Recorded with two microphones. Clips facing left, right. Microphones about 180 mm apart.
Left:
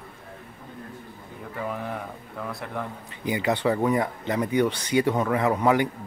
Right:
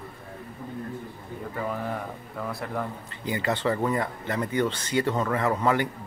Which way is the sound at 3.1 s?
15° left (ahead or behind).